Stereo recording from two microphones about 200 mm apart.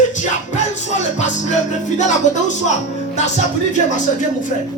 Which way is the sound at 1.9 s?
35° left (ahead or behind).